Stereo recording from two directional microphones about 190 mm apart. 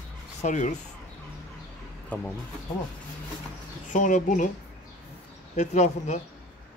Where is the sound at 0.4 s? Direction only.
40° left (ahead or behind).